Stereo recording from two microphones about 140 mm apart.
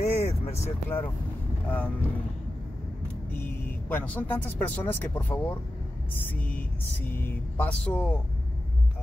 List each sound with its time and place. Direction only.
0.0 s vehicle: 50° left (ahead or behind)
0.8 s speech: 15° left (ahead or behind)
3.3 s speech: 15° left (ahead or behind)